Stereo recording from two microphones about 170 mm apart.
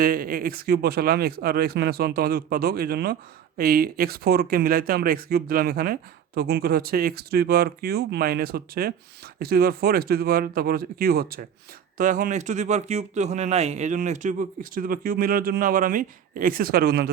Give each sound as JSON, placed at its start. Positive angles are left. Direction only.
{"t": 0.0, "sound": "speech", "side_deg": -60}
{"t": 11.9, "sound": "speech", "side_deg": -50}